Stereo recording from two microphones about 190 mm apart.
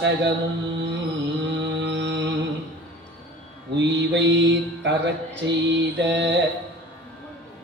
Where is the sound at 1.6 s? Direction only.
65° right (ahead or behind).